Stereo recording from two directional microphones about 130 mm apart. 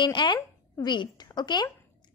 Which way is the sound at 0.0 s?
35° left (ahead or behind).